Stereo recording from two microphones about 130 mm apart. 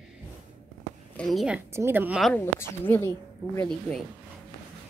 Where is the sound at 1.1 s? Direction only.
Centre (ahead or behind).